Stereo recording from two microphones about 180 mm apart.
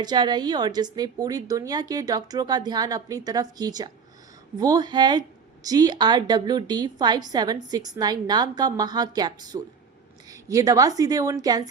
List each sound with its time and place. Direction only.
0.0 s a woman's voice: 25° right (ahead or behind)